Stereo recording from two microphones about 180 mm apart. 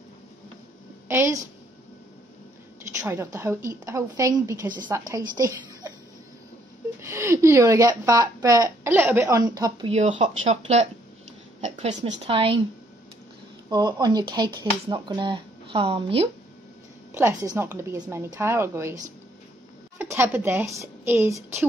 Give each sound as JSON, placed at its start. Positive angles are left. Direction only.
{"t": 1.0, "sound": "a woman's voice", "side_deg": -15}
{"t": 3.0, "sound": "a woman's voice", "side_deg": -15}
{"t": 7.0, "sound": "a woman's voice", "side_deg": -15}
{"t": 9.8, "sound": "speech", "side_deg": -35}
{"t": 13.7, "sound": "speech", "side_deg": -25}
{"t": 17.1, "sound": "a woman's voice", "side_deg": -15}
{"t": 20.0, "sound": "a woman's voice", "side_deg": -15}